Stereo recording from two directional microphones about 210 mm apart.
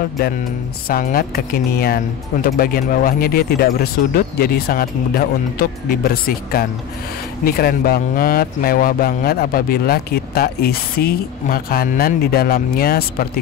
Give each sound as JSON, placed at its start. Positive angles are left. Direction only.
{"t": 0.8, "sound": "speech", "side_deg": 45}